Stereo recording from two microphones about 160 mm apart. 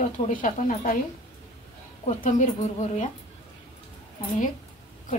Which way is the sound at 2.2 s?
50° left (ahead or behind).